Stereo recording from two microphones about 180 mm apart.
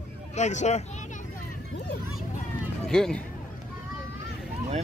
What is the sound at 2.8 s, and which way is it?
Speech, centre (ahead or behind).